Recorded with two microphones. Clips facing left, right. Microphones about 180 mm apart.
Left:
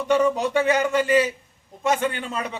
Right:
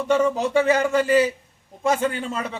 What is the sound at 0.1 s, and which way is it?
Speech, 25° right (ahead or behind).